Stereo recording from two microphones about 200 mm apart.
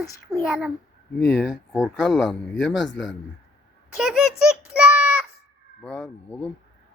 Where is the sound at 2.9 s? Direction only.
65° left (ahead or behind).